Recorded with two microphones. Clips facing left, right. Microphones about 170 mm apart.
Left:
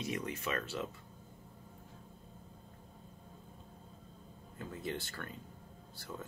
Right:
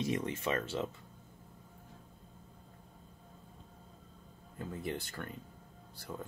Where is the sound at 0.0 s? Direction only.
30° right (ahead or behind).